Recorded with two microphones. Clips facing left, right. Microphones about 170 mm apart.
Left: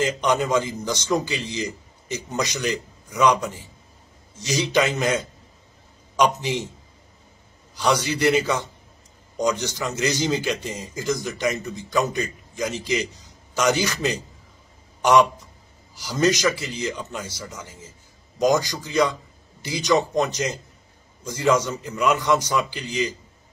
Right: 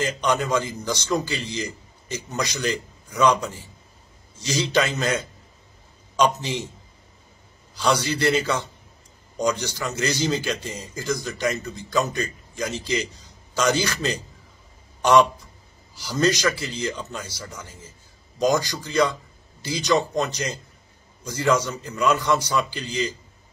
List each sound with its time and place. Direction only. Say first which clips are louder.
0.0 s a man's voice: left 2 dB; 20° left (ahead or behind)
7.7 s a man's voice: even; 15° left (ahead or behind)